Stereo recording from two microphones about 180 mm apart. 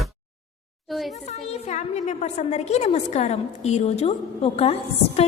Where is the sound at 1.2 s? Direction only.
35° left (ahead or behind).